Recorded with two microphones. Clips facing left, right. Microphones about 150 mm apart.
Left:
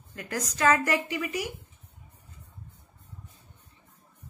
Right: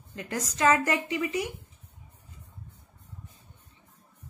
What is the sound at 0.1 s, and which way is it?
A woman's voice, 25° right (ahead or behind).